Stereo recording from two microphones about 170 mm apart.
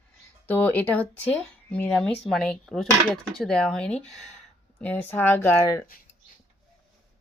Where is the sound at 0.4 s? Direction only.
10° left (ahead or behind).